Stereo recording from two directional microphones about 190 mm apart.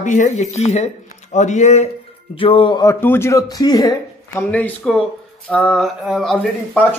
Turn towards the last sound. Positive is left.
turn(degrees=5)  # may be behind; listen again after turning